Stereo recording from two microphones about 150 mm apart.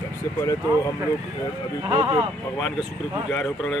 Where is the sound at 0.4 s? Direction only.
20° left (ahead or behind).